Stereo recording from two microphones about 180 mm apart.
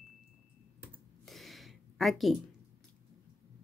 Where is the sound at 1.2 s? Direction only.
Centre (ahead or behind).